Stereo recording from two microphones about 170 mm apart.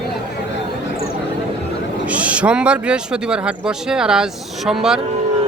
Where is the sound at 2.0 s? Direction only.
5° right (ahead or behind).